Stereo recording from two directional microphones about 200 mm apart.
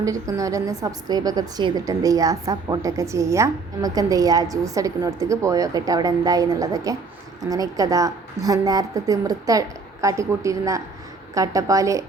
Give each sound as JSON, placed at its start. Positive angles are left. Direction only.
{"t": 0.0, "sound": "a woman's voice", "side_deg": -15}